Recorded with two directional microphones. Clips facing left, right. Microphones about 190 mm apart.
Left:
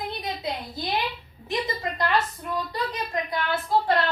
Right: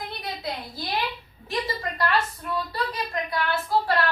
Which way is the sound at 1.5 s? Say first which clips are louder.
Left 1 dB; 20° left (ahead or behind).